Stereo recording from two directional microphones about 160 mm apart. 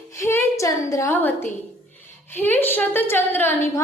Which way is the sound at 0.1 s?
15° left (ahead or behind).